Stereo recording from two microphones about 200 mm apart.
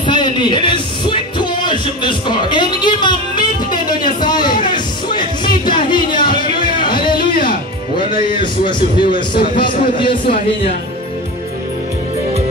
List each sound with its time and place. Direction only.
0.0 s music: 20° left (ahead or behind)
8.4 s a man's voice: 25° left (ahead or behind)